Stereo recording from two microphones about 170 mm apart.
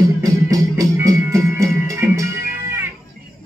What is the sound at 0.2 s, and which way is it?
Music, 20° right (ahead or behind).